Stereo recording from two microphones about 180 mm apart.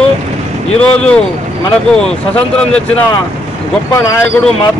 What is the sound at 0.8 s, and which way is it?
Speech, 5° left (ahead or behind).